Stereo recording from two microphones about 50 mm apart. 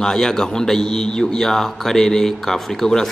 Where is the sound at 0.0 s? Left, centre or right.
Centre.